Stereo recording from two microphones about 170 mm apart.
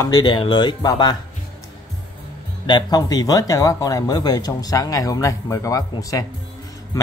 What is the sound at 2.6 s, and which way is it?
A man's voice, 25° left (ahead or behind).